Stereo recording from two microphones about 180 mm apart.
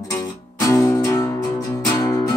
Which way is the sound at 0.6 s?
20° left (ahead or behind).